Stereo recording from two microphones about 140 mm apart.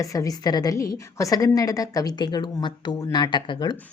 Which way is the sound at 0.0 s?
25° left (ahead or behind).